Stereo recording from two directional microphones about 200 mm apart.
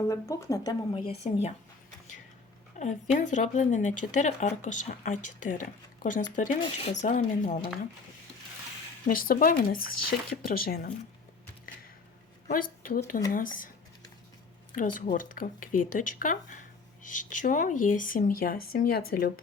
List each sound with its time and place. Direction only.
0.1 s speech: 15° left (ahead or behind)
0.9 s speech: 30° left (ahead or behind)
2.7 s speech: 35° left (ahead or behind)
9.0 s speech: 45° left (ahead or behind)
12.5 s speech: 45° left (ahead or behind)
14.8 s speech: 45° left (ahead or behind)